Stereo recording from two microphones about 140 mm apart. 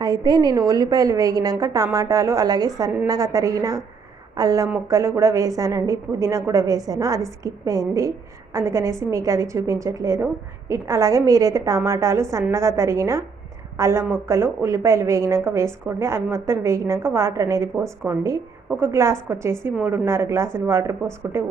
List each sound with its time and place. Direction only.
0.0 s a woman's voice: 30° right (ahead or behind)